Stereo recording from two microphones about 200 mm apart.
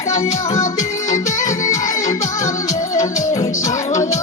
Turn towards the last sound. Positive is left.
turn(degrees=15)  # may be behind; listen again after turning